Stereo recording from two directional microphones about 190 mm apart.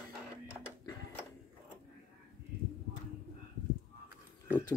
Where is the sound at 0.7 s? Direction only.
10° left (ahead or behind).